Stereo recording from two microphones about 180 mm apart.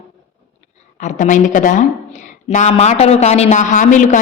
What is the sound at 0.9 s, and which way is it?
A woman's voice, 45° left (ahead or behind).